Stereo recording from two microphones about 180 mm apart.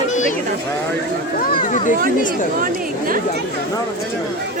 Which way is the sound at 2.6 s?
50° right (ahead or behind).